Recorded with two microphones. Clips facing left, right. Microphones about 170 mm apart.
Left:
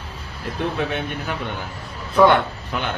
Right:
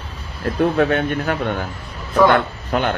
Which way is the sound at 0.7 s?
55° right (ahead or behind).